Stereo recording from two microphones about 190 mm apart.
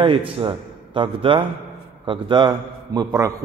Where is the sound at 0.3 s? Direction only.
25° right (ahead or behind).